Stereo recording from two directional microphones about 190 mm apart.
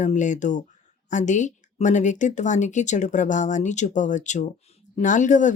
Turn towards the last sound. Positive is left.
turn(degrees=40)  # may be behind; listen again after turning